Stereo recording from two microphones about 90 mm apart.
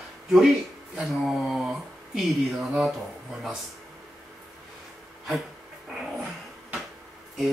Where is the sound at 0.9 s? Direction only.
5° right (ahead or behind).